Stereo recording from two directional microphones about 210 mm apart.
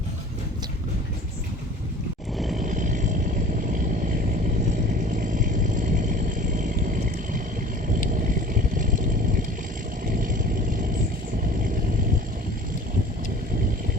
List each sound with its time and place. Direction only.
2.6 s vehicle: 35° right (ahead or behind)
5.3 s vehicle: 40° right (ahead or behind)
10.2 s vehicle: 40° right (ahead or behind)